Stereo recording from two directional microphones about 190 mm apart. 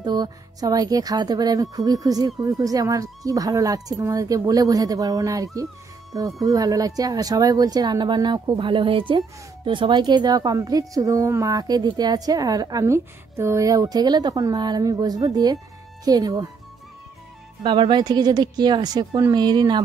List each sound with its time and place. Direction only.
0.0 s speech: 20° right (ahead or behind)
17.6 s speech: 25° right (ahead or behind)